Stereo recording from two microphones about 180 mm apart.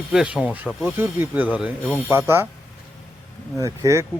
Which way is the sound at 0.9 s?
10° right (ahead or behind).